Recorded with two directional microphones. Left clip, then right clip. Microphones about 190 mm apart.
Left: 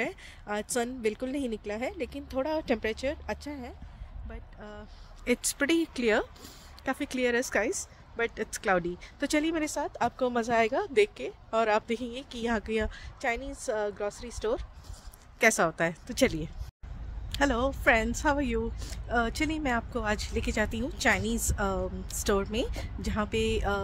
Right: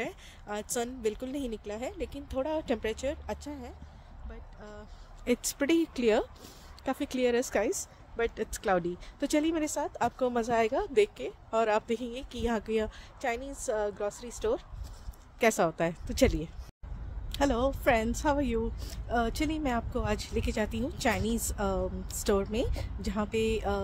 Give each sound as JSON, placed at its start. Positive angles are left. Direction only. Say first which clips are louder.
{"t": 0.0, "sound": "speech", "louder": "left 4 dB", "side_deg": 30}
{"t": 4.3, "sound": "speech", "louder": "left 3 dB", "side_deg": 50}
{"t": 5.2, "sound": "speech", "louder": "left 1 dB", "side_deg": 0}
{"t": 7.7, "sound": "speech", "louder": "even", "side_deg": 15}
{"t": 13.2, "sound": "speech", "louder": "left 2 dB", "side_deg": 30}
{"t": 15.3, "sound": "speech", "louder": "left 2 dB", "side_deg": 0}